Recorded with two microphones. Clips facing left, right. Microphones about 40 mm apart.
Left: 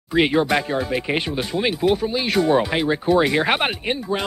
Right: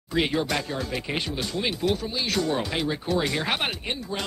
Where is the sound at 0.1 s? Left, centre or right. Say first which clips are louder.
Left 7 dB; left.